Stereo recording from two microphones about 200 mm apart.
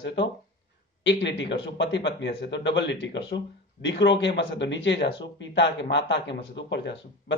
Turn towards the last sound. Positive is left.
turn(degrees=60)  # may be behind; listen again after turning